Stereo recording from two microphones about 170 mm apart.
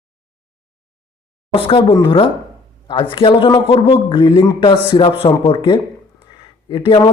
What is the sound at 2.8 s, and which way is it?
A man's voice, 30° left (ahead or behind).